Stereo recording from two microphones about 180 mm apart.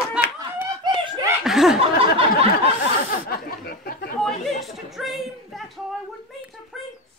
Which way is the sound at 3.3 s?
55° left (ahead or behind).